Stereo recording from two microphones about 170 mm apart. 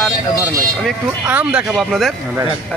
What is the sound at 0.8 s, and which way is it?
Speech, 5° right (ahead or behind).